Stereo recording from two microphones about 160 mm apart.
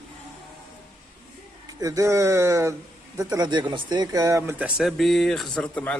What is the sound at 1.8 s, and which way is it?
A man's voice, 20° right (ahead or behind).